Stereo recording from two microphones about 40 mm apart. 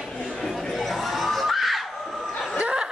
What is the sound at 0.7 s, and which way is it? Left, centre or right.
Children shouting, centre.